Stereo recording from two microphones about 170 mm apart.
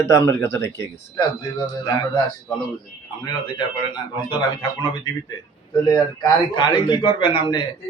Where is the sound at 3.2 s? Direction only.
25° left (ahead or behind).